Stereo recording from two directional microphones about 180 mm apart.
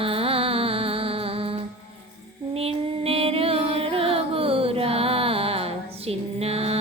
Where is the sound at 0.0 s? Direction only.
30° right (ahead or behind).